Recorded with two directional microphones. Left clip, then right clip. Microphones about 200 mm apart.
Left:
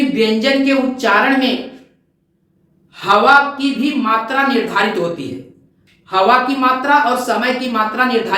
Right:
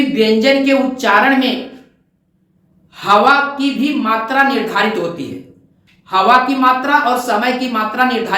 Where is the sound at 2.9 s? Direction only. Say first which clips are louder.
Right 1 dB; 15° right (ahead or behind).